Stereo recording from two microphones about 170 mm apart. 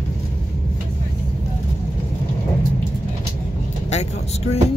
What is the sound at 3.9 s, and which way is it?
Vehicle, 40° left (ahead or behind).